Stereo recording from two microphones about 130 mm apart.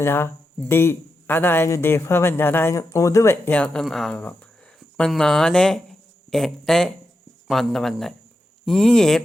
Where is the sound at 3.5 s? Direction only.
10° left (ahead or behind).